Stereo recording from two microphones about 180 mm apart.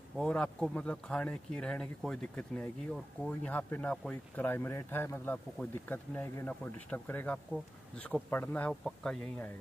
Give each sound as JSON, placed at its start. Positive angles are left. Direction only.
{"t": 0.2, "sound": "speech", "side_deg": 5}